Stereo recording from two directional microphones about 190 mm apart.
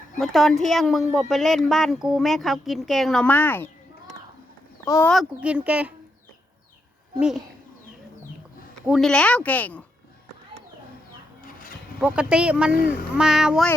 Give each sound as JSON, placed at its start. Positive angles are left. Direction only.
{"t": 0.2, "sound": "speech", "side_deg": 0}
{"t": 4.9, "sound": "a woman's voice", "side_deg": 15}
{"t": 5.1, "sound": "speech", "side_deg": -5}
{"t": 7.2, "sound": "speech", "side_deg": -5}
{"t": 8.9, "sound": "a woman's voice", "side_deg": 0}
{"t": 11.9, "sound": "speech", "side_deg": -5}
{"t": 12.7, "sound": "speech", "side_deg": 45}
{"t": 13.1, "sound": "speech", "side_deg": -5}